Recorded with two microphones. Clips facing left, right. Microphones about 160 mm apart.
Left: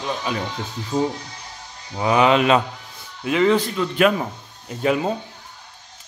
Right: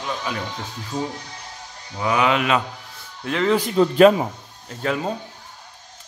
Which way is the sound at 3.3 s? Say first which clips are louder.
Left 3 dB; 5° left (ahead or behind).